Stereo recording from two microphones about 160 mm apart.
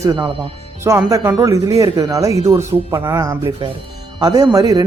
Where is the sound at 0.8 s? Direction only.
15° right (ahead or behind).